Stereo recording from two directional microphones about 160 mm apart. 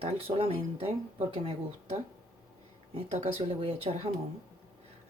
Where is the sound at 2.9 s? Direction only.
40° right (ahead or behind).